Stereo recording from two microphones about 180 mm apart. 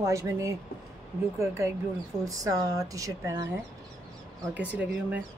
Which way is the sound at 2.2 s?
20° right (ahead or behind).